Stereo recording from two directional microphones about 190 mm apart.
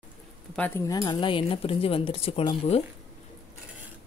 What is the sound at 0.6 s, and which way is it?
Speech, 10° left (ahead or behind).